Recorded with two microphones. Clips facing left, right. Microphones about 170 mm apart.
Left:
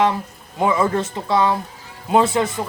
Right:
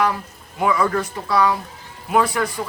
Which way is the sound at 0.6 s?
25° left (ahead or behind).